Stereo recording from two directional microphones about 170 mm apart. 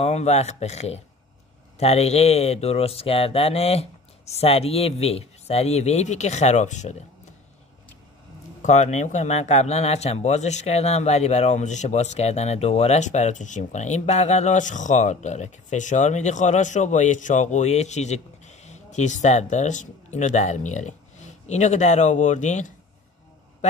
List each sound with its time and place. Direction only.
0.0 s speech: 40° left (ahead or behind)
8.6 s speech: 45° left (ahead or behind)